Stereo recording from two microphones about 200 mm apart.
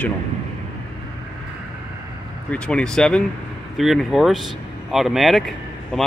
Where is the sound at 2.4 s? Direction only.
5° left (ahead or behind).